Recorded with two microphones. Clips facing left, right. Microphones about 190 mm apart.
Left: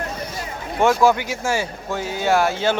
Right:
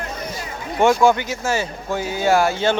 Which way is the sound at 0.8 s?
5° left (ahead or behind).